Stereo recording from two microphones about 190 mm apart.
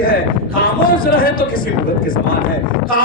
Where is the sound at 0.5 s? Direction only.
50° left (ahead or behind).